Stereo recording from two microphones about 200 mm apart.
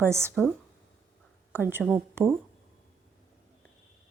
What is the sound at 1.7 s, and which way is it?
Speech, 10° right (ahead or behind).